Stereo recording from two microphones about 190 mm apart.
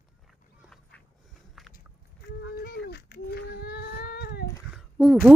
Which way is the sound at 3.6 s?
60° left (ahead or behind).